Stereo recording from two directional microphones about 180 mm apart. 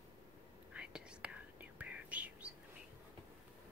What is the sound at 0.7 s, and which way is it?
Whispering, 5° right (ahead or behind).